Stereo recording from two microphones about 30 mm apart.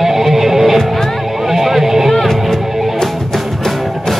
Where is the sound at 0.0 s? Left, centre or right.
Centre.